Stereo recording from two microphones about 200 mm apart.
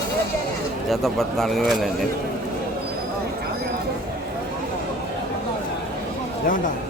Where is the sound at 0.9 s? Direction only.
Centre (ahead or behind).